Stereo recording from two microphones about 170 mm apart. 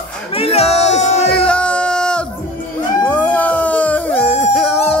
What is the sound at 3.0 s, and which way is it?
Music, 10° left (ahead or behind).